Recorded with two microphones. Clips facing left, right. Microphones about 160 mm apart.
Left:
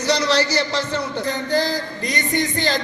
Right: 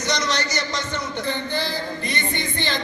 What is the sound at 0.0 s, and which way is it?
Speech, 30° left (ahead or behind).